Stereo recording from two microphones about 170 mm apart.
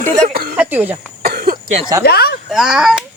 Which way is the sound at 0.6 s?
10° right (ahead or behind).